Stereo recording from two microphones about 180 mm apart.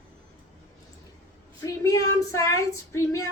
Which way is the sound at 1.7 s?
20° left (ahead or behind).